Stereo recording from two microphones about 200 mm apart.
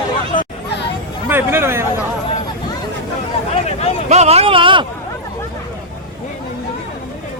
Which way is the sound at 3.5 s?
30° left (ahead or behind).